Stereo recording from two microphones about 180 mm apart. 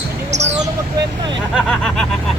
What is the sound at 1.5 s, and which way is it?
Vehicle, centre (ahead or behind).